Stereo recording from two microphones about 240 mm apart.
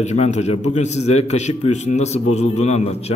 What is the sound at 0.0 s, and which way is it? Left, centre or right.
A man's voice, left.